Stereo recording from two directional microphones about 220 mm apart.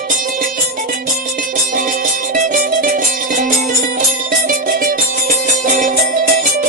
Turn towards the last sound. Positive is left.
turn(degrees=-35)  # may be behind; listen again after turning